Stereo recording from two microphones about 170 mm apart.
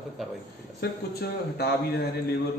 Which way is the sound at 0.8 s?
70° left (ahead or behind).